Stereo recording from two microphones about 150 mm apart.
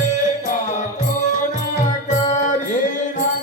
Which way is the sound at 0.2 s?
55° left (ahead or behind).